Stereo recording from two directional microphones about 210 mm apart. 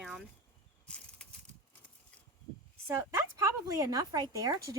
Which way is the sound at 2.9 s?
10° right (ahead or behind).